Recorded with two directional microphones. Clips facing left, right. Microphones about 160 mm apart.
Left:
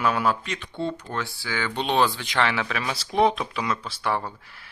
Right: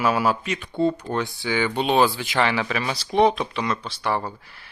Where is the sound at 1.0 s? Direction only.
20° right (ahead or behind); by 4.3 s centre (ahead or behind).